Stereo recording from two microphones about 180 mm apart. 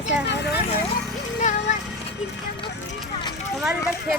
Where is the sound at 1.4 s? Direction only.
40° left (ahead or behind).